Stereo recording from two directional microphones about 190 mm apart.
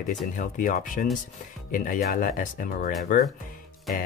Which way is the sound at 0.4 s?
45° left (ahead or behind).